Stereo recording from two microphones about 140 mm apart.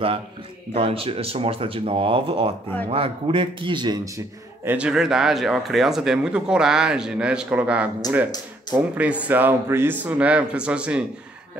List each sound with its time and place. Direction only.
0.7 s speech: 40° right (ahead or behind)
4.6 s speech: 5° right (ahead or behind)